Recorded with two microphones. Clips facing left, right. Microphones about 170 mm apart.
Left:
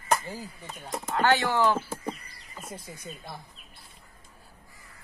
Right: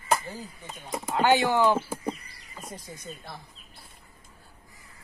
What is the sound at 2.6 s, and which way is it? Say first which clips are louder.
Bird: even; 5° left (ahead or behind).